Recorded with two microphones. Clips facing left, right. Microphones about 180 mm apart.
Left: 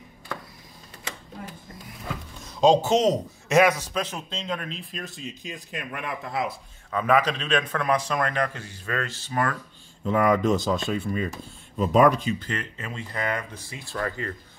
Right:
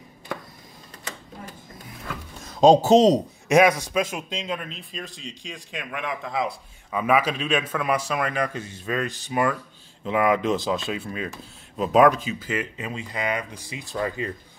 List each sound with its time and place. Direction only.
2.5 s speech: 45° right (ahead or behind)
3.4 s speech: 15° right (ahead or behind)
6.9 s speech: 10° right (ahead or behind)
8.5 s speech: 20° right (ahead or behind)